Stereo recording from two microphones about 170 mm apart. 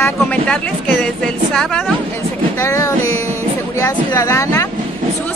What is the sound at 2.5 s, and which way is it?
Speech, 15° left (ahead or behind).